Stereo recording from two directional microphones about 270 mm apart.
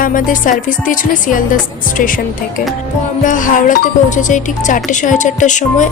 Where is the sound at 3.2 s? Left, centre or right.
Left.